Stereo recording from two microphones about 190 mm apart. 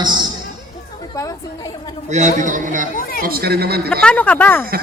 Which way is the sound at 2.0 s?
40° right (ahead or behind).